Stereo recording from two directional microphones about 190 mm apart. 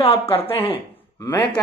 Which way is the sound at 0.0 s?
30° left (ahead or behind).